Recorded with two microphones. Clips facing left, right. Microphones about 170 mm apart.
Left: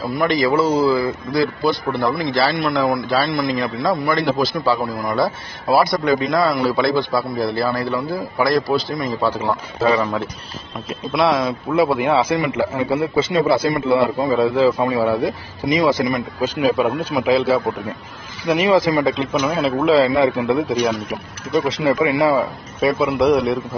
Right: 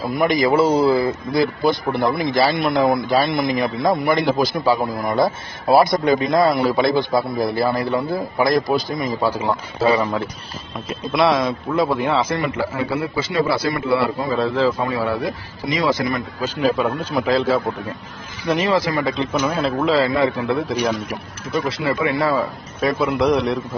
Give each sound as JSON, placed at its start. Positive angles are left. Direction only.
{"t": 0.3, "sound": "a man's voice", "side_deg": -20}
{"t": 10.9, "sound": "a man's voice", "side_deg": 0}
{"t": 12.8, "sound": "a man's voice", "side_deg": 25}